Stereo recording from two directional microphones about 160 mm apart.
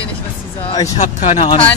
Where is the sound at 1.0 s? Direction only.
45° left (ahead or behind).